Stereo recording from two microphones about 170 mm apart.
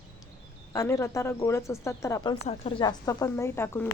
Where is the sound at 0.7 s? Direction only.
20° left (ahead or behind).